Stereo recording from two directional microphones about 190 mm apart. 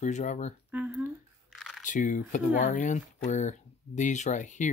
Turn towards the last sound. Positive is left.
turn(degrees=40)  # may be behind; listen again after turning